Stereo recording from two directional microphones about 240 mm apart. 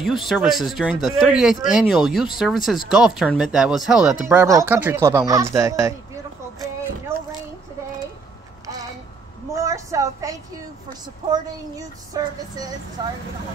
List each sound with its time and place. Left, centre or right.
0.0 s speech: centre
9.5 s a sound: centre
10.9 s speech: centre